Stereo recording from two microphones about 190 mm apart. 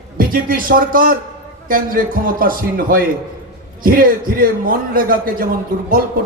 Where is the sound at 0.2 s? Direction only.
50° right (ahead or behind).